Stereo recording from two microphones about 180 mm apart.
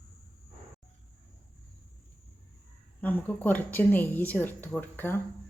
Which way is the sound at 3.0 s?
10° left (ahead or behind).